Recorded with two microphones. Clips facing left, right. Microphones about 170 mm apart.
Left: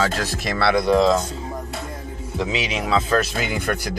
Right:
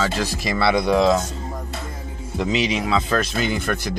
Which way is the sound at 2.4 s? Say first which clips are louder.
Right 3 dB; centre (ahead or behind).